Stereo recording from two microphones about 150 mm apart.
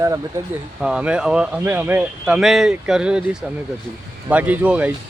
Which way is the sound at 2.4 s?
Centre (ahead or behind).